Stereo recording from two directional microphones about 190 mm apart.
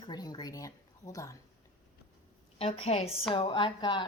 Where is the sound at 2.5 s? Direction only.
30° left (ahead or behind).